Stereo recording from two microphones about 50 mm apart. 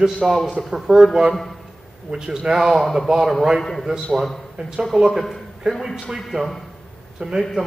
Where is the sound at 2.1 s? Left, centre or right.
Centre.